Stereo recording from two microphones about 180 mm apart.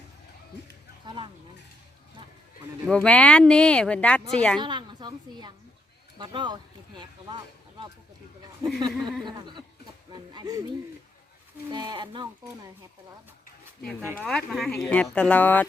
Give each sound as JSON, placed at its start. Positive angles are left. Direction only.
{"t": 1.0, "sound": "speech", "side_deg": -30}
{"t": 2.9, "sound": "speech", "side_deg": 5}
{"t": 4.6, "sound": "a woman's voice", "side_deg": -25}
{"t": 8.9, "sound": "speech", "side_deg": 0}
{"t": 9.2, "sound": "speech", "side_deg": -25}
{"t": 11.7, "sound": "speech", "side_deg": -25}
{"t": 14.2, "sound": "speech", "side_deg": 5}